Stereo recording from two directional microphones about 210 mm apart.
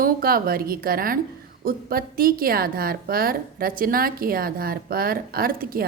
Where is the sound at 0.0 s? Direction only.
45° right (ahead or behind).